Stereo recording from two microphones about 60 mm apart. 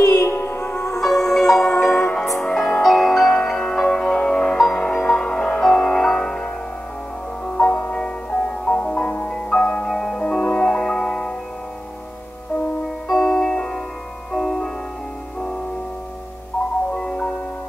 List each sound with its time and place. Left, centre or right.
0.0 s music: left
1.0 s music: centre
2.0 s music: centre
4.6 s music: centre
5.0 s music: centre
7.6 s music: centre
12.8 s music: centre
16.9 s music: centre